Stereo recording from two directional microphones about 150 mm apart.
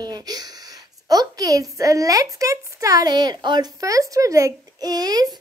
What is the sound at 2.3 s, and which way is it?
A child's voice, 20° right (ahead or behind).